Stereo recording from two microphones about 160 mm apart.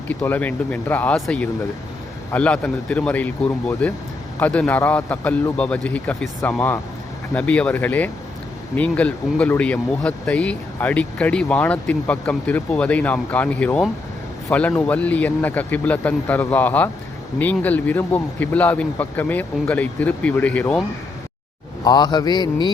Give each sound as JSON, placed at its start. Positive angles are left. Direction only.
{"t": 0.1, "sound": "speech", "side_deg": 10}
{"t": 21.8, "sound": "mantra", "side_deg": 25}